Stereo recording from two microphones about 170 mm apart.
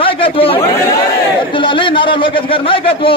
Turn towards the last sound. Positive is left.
turn(degrees=30)  # may be behind; listen again after turning